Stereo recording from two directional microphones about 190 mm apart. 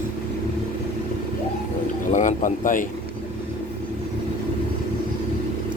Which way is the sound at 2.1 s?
40° left (ahead or behind).